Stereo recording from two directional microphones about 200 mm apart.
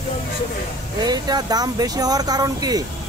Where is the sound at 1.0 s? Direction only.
20° right (ahead or behind).